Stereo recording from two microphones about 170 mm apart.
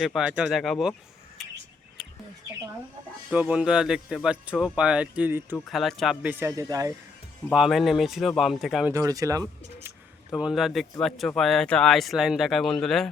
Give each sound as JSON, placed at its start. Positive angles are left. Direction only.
{"t": 0.0, "sound": "speech", "side_deg": 0}
{"t": 3.2, "sound": "speech", "side_deg": -5}
{"t": 5.6, "sound": "speech", "side_deg": 0}
{"t": 6.4, "sound": "speech", "side_deg": -20}
{"t": 7.5, "sound": "speech", "side_deg": 0}
{"t": 8.9, "sound": "speech", "side_deg": -20}
{"t": 10.3, "sound": "speech", "side_deg": 0}